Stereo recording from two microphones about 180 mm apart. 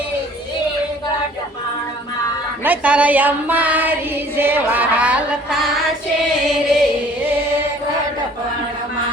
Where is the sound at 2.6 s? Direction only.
10° right (ahead or behind).